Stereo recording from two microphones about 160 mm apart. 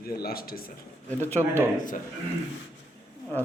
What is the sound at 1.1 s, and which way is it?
Speech, 10° left (ahead or behind).